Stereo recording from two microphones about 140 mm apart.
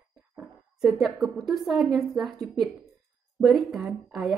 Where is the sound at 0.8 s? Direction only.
Centre (ahead or behind).